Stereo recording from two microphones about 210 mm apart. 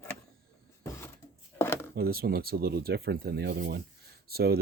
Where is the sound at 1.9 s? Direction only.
45° right (ahead or behind).